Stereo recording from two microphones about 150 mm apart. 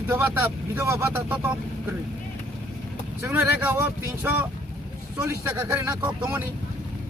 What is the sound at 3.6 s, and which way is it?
A man's voice, 15° right (ahead or behind).